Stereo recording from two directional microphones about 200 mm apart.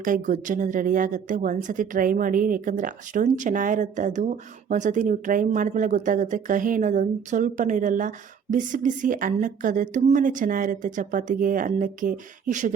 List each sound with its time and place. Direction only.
0.0 s a woman's voice: 40° right (ahead or behind)